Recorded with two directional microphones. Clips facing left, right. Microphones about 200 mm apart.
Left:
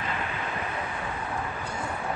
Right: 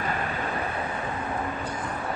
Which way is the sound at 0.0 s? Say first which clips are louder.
Right 3 dB; 45° right (ahead or behind).